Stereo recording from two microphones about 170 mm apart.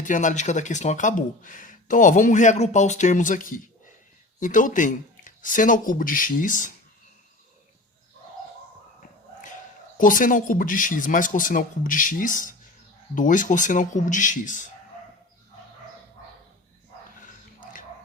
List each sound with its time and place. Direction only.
0.0 s speech: 50° left (ahead or behind)
10.0 s speech: 55° left (ahead or behind)
17.2 s dog: 50° left (ahead or behind)